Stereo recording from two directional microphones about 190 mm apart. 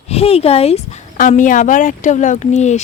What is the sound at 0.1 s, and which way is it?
Speech, 30° left (ahead or behind).